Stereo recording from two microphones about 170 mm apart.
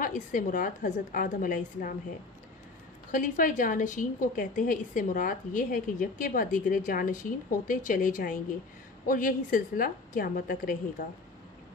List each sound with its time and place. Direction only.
0.0 s a woman's voice: 50° left (ahead or behind)
3.1 s a woman's voice: 50° left (ahead or behind)